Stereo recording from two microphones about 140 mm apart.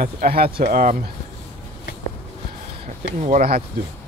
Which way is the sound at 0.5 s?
75° right (ahead or behind).